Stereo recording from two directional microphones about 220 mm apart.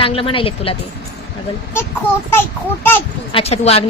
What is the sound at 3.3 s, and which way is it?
Speech, 30° left (ahead or behind).